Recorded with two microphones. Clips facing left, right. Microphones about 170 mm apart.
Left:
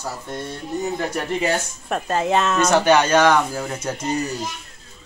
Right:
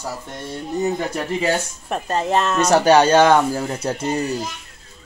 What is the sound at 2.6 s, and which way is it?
Speech, 35° right (ahead or behind).